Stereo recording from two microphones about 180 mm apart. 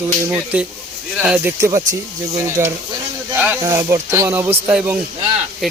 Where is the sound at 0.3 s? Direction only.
5° right (ahead or behind).